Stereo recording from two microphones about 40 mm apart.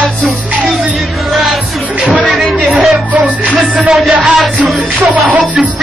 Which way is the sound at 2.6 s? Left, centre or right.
Right.